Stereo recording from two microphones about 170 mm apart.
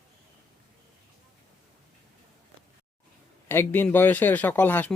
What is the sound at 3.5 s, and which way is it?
Speech, 10° left (ahead or behind).